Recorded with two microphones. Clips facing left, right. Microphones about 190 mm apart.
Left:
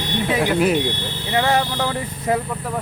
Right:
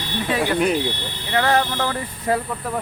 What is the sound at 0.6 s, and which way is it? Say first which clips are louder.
Speech: left 2 dB; centre (ahead or behind).